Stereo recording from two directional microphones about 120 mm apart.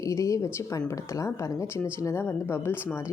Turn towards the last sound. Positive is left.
turn(degrees=20)  # may be behind; listen again after turning